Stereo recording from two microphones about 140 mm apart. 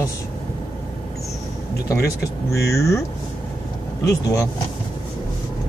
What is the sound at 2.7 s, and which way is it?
Speech, 20° left (ahead or behind).